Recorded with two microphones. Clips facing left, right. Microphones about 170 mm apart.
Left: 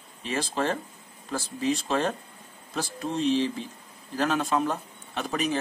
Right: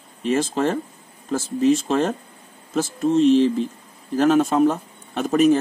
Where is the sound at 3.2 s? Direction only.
50° right (ahead or behind).